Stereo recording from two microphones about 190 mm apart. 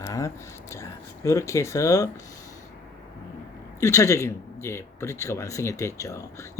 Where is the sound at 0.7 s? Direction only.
15° left (ahead or behind).